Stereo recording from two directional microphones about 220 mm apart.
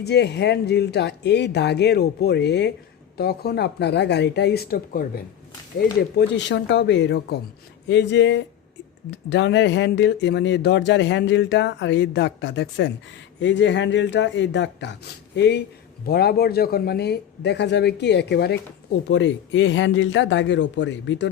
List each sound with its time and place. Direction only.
0.0 s speech: 50° left (ahead or behind)